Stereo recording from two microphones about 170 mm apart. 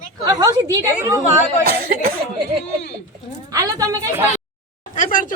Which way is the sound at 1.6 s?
60° right (ahead or behind).